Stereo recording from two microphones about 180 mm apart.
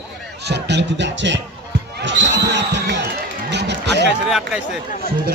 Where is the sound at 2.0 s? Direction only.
90° right.